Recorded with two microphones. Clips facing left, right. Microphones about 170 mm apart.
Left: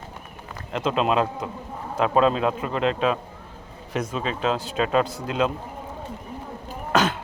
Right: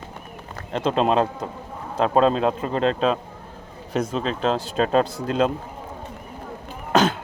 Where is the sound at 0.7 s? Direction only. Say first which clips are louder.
Right 2 dB; 35° right (ahead or behind).